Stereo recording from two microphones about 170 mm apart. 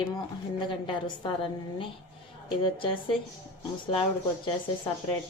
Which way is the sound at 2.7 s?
30° left (ahead or behind).